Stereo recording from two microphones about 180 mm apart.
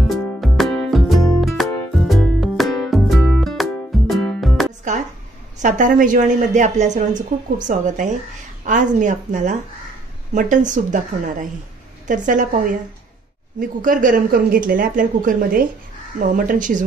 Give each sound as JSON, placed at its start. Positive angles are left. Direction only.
{"t": 0.1, "sound": "music", "side_deg": 0}
{"t": 4.9, "sound": "a sound", "side_deg": -40}
{"t": 5.6, "sound": "speech", "side_deg": -45}